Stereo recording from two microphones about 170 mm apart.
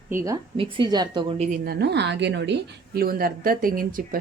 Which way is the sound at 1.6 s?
75° right (ahead or behind).